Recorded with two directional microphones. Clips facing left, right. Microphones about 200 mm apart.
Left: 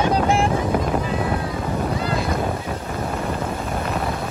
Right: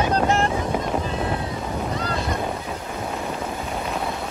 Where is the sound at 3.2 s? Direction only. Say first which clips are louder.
Left 3 dB; centre (ahead or behind).